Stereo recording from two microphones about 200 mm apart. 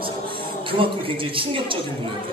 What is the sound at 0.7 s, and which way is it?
A man's voice, 25° right (ahead or behind).